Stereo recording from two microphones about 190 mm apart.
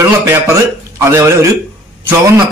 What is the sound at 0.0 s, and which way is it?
A man's voice, 15° right (ahead or behind).